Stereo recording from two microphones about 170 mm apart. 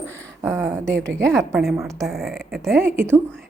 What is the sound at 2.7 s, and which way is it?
Speech, 15° right (ahead or behind).